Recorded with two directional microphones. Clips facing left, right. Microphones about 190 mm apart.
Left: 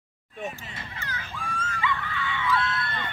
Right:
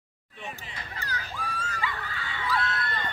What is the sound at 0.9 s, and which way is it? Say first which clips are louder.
Music: right 3 dB; 35° right (ahead or behind).